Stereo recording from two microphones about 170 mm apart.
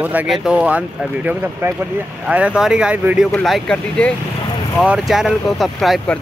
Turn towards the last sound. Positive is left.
turn(degrees=0)  # may be behind; listen again after turning